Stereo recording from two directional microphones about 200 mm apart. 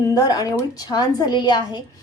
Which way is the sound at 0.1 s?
15° left (ahead or behind).